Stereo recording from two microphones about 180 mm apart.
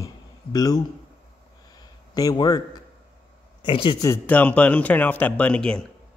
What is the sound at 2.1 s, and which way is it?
Speech, 20° left (ahead or behind).